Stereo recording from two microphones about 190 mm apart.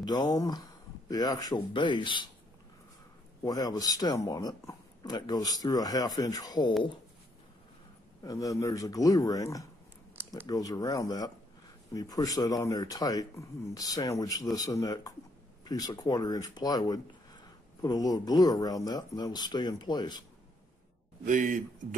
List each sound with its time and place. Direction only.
0.0 s speech: 20° left (ahead or behind)
3.4 s speech: 20° left (ahead or behind)
8.2 s speech: 20° left (ahead or behind)
21.3 s a man's voice: 40° right (ahead or behind)